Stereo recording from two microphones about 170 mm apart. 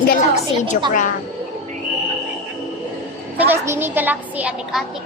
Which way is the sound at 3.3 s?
10° right (ahead or behind).